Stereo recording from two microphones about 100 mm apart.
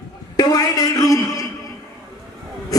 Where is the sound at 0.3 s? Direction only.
40° left (ahead or behind).